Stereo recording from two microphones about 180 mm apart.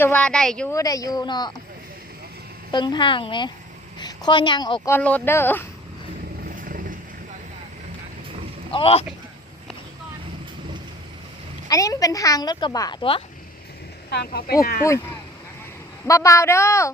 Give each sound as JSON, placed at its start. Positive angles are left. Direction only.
{"t": 0.0, "sound": "a woman's voice", "side_deg": 10}
{"t": 0.7, "sound": "speech", "side_deg": 20}
{"t": 2.7, "sound": "speech", "side_deg": 25}
{"t": 4.9, "sound": "speech", "side_deg": 10}
{"t": 6.6, "sound": "vehicle", "side_deg": -50}
{"t": 8.7, "sound": "speech", "side_deg": 30}
{"t": 11.7, "sound": "speech", "side_deg": 20}
{"t": 14.1, "sound": "speech", "side_deg": 65}
{"t": 14.8, "sound": "speech", "side_deg": 15}